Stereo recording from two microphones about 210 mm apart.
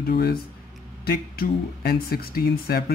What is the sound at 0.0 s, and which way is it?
Speech, 45° left (ahead or behind).